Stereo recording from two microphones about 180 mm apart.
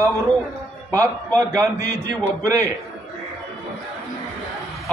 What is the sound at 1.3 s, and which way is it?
Speech, 20° right (ahead or behind).